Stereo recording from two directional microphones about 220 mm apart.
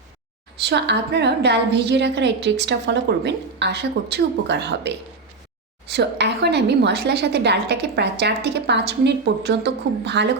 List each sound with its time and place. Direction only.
0.6 s a woman's voice: 50° right (ahead or behind)